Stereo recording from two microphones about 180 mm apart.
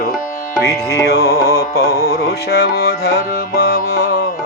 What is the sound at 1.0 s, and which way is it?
Music, 65° left (ahead or behind).